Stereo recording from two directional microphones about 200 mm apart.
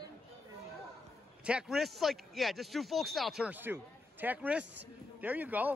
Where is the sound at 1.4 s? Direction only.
5° right (ahead or behind).